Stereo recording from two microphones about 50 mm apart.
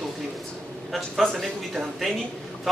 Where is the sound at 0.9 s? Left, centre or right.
Centre.